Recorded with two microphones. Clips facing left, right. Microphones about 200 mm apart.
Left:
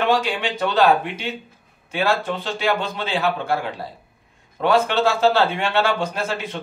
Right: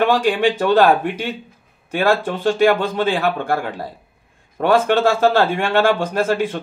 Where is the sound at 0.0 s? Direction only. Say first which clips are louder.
Right 5 dB; 50° right (ahead or behind).